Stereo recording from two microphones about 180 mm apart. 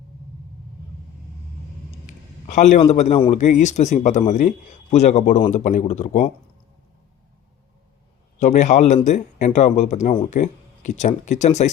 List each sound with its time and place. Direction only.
2.0 s a sound: 45° left (ahead or behind)
3.3 s speech: 40° left (ahead or behind)
8.4 s speech: 40° left (ahead or behind)